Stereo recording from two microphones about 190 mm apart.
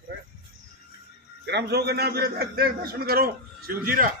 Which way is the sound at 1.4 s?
60° right (ahead or behind).